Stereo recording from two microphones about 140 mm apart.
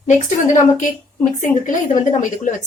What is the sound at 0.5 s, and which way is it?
Speech, 60° left (ahead or behind).